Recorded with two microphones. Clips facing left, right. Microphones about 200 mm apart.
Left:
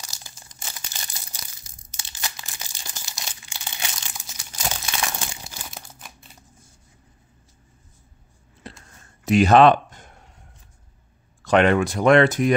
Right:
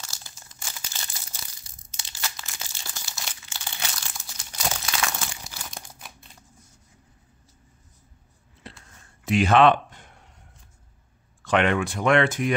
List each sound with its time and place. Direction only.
0.0 s crumpling: 15° left (ahead or behind)
5.9 s crumpling: centre (ahead or behind)
8.6 s a sound: 40° left (ahead or behind)
11.4 s speech: 40° left (ahead or behind)